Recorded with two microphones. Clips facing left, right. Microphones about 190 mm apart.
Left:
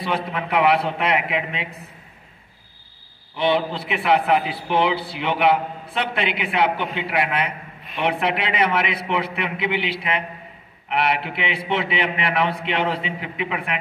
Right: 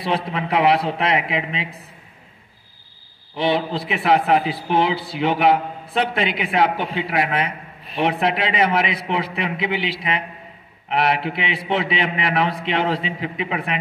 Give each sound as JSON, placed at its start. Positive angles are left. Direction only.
{"t": 0.0, "sound": "a man's voice", "side_deg": -30}
{"t": 3.3, "sound": "a man's voice", "side_deg": -35}